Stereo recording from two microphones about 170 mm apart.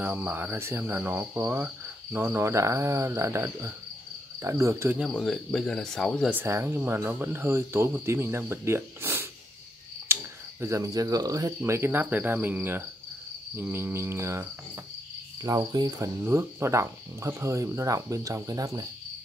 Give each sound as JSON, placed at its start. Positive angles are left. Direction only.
{"t": 0.0, "sound": "speech", "side_deg": -10}
{"t": 5.1, "sound": "speech", "side_deg": 0}
{"t": 6.3, "sound": "speech", "side_deg": -15}
{"t": 10.6, "sound": "speech", "side_deg": -20}